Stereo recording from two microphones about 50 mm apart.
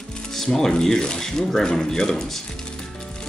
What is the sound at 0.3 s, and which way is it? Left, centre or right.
Speech, centre.